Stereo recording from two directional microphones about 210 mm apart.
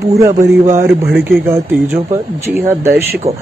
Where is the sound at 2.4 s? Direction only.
10° right (ahead or behind).